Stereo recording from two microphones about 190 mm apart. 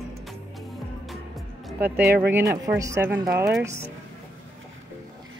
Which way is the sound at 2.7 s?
15° right (ahead or behind).